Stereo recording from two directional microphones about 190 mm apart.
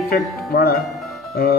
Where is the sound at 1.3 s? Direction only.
55° left (ahead or behind).